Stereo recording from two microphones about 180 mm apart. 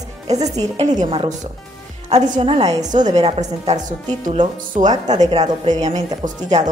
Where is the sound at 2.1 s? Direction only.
35° right (ahead or behind).